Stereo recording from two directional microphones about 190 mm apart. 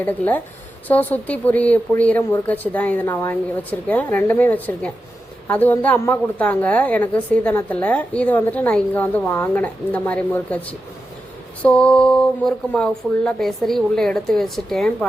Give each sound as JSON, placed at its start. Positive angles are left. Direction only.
{"t": 0.0, "sound": "a woman's voice", "side_deg": 10}